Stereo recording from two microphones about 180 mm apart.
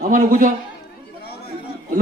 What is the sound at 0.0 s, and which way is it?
Speech, 50° right (ahead or behind).